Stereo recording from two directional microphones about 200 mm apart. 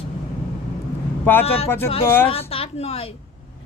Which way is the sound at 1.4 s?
30° left (ahead or behind).